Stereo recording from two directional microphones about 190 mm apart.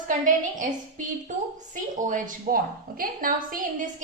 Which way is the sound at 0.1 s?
45° right (ahead or behind).